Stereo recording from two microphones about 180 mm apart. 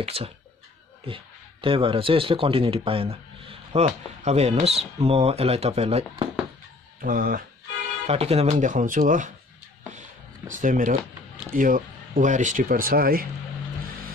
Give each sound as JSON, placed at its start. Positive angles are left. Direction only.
{"t": 0.0, "sound": "speech", "side_deg": -35}
{"t": 7.0, "sound": "speech", "side_deg": -50}
{"t": 8.1, "sound": "speech", "side_deg": -35}
{"t": 10.5, "sound": "speech", "side_deg": -45}